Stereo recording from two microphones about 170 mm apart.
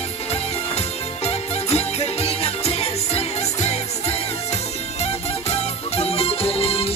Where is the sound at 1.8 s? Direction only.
35° left (ahead or behind).